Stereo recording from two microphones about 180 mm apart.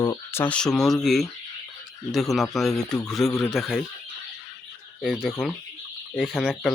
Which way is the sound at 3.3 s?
15° left (ahead or behind).